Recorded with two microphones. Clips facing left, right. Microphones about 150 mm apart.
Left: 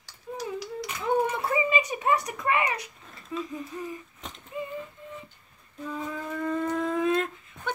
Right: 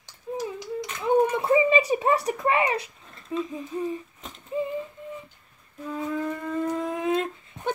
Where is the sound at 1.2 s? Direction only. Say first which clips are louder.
Right 6 dB; 20° right (ahead or behind).